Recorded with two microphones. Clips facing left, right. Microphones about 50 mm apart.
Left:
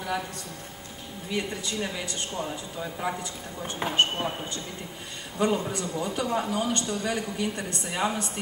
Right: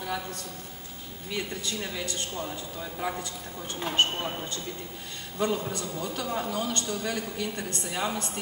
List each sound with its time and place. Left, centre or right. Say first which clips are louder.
1.3 s a man's voice: left 2 dB; centre
5.4 s a man's voice: left 3 dB; centre